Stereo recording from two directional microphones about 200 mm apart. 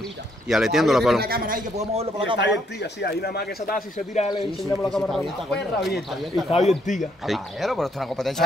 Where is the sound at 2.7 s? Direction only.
55° left (ahead or behind); by 4.3 s 40° left (ahead or behind).